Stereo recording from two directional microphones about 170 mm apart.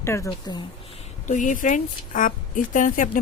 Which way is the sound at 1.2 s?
45° left (ahead or behind).